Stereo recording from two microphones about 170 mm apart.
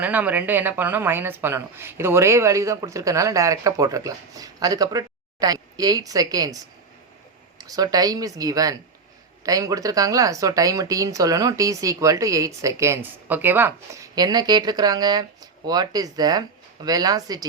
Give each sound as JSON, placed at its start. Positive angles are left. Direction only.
{"t": 0.0, "sound": "a woman's voice", "side_deg": -10}
{"t": 7.6, "sound": "speech", "side_deg": -20}